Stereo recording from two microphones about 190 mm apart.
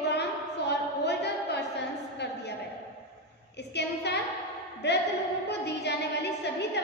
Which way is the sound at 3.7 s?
60° left (ahead or behind).